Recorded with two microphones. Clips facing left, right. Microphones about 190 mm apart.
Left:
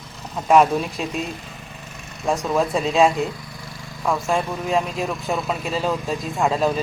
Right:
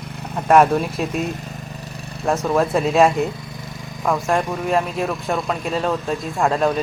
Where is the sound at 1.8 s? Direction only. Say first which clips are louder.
Right 5 dB; 35° right (ahead or behind).